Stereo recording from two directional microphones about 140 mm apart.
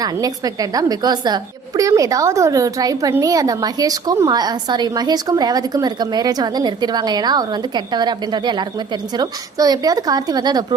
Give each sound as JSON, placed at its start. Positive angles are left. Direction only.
{"t": 0.0, "sound": "a woman's voice", "side_deg": -25}